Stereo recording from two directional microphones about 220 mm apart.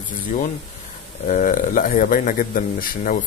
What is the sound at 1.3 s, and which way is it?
Speech, 35° left (ahead or behind).